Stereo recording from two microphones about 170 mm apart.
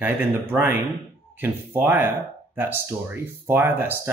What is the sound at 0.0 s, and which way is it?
Speech, 10° right (ahead or behind).